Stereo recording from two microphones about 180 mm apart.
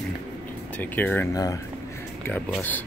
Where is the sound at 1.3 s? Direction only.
20° left (ahead or behind).